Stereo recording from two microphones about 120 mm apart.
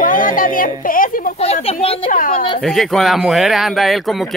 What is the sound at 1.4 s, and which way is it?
Speech, 55° left (ahead or behind).